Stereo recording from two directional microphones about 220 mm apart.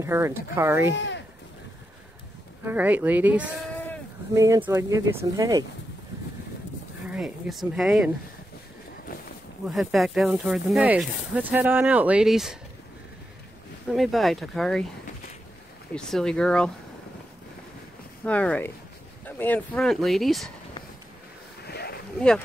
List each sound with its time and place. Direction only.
0.0 s speech: 10° right (ahead or behind)
0.9 s speech: 55° left (ahead or behind)
2.6 s speech: 10° right (ahead or behind)
7.1 s speech: 5° right (ahead or behind)
9.7 s speech: centre (ahead or behind)
13.8 s speech: centre (ahead or behind)
15.9 s speech: 5° left (ahead or behind)
18.2 s speech: 5° left (ahead or behind)
21.6 s a sound: 45° left (ahead or behind)